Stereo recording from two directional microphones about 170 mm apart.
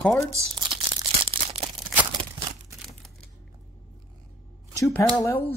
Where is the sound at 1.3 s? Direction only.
35° right (ahead or behind).